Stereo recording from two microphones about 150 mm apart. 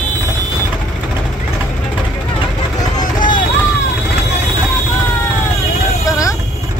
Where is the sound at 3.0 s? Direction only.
60° left (ahead or behind).